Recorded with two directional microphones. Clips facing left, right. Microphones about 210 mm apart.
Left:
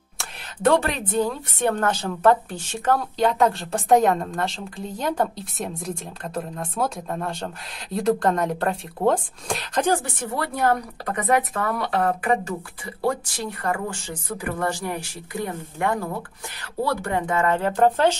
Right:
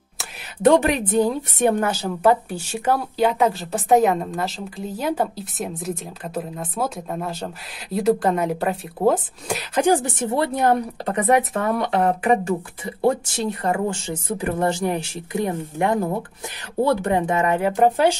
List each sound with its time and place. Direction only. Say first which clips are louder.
0.6 s a woman's voice: right 4 dB; 15° right (ahead or behind)